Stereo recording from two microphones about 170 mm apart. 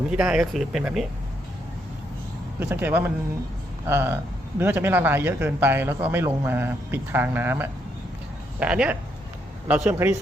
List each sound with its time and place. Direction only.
0.1 s speech: 5° right (ahead or behind)
2.6 s speech: 10° right (ahead or behind)